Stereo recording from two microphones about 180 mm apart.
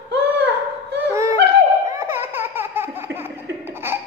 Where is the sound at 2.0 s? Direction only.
15° right (ahead or behind).